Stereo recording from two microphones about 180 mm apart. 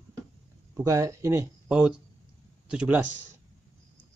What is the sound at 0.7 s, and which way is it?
Speech, 15° right (ahead or behind).